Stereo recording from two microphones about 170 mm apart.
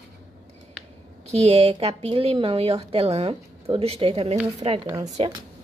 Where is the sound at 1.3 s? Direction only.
40° right (ahead or behind).